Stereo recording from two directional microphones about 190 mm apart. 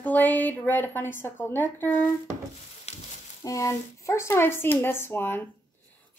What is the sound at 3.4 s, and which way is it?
A woman's voice, 15° left (ahead or behind).